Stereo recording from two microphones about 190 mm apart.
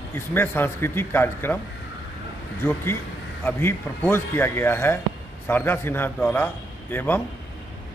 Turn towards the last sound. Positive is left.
turn(degrees=10)  # may be behind; listen again after turning